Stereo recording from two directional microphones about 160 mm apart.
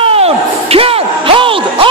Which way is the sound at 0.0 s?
35° right (ahead or behind).